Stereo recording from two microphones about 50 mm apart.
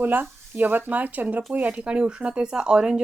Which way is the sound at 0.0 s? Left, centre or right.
Right.